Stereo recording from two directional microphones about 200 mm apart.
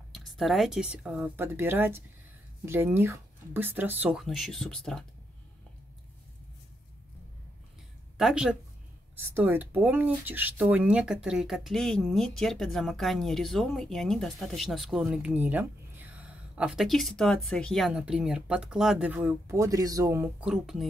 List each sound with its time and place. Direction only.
0.4 s speech: centre (ahead or behind)
8.2 s speech: 5° right (ahead or behind)